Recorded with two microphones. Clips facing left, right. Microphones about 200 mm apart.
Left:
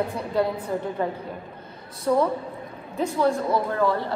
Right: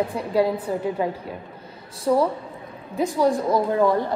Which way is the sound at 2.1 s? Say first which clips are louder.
Right 1 dB; 5° right (ahead or behind).